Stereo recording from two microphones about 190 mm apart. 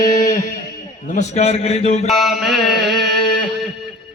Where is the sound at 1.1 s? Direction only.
35° left (ahead or behind).